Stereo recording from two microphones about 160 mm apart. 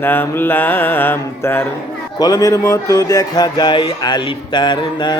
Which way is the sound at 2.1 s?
25° left (ahead or behind).